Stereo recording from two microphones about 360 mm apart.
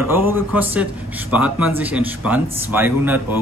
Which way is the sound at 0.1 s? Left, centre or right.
Centre.